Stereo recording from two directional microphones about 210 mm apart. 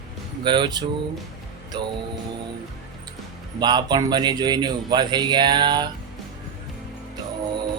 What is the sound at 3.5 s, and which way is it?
Speech, 20° right (ahead or behind).